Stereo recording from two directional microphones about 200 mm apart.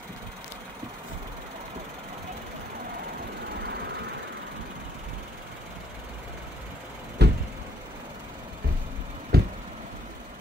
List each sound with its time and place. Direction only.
7.2 s vehicle: 55° right (ahead or behind)
9.3 s knock: 50° right (ahead or behind)